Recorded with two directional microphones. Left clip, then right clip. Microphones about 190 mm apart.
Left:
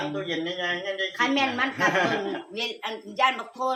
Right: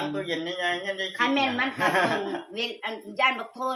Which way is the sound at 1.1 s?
15° left (ahead or behind).